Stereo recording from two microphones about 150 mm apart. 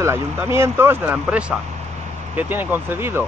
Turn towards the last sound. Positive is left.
turn(degrees=-15)  # may be behind; listen again after turning